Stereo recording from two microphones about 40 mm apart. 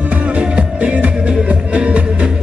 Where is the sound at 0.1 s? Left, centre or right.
Right.